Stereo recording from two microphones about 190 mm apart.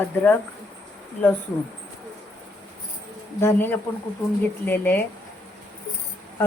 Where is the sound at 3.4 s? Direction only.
10° left (ahead or behind).